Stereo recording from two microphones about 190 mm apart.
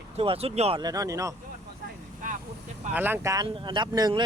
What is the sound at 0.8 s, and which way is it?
Speech, 20° right (ahead or behind).